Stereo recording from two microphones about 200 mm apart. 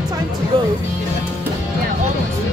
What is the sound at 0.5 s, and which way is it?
Music, 25° right (ahead or behind).